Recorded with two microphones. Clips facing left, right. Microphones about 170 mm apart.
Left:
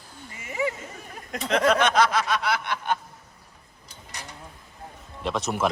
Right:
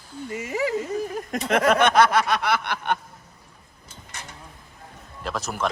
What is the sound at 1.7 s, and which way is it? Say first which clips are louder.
Snicker: right 3 dB; 55° right (ahead or behind).